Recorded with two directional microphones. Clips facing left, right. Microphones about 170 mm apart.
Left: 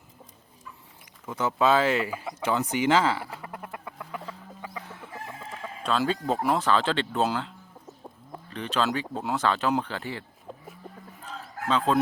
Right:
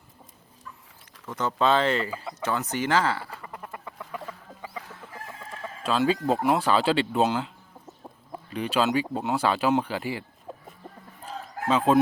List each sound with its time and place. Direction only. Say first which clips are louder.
1.3 s speech: even; 10° left (ahead or behind)
3.4 s chicken: left 1 dB; 5° left (ahead or behind)
4.9 s chicken: left 2 dB; 20° left (ahead or behind)
5.8 s speech: right 3 dB; 5° right (ahead or behind)
11.7 s speech: right 3 dB; 10° right (ahead or behind)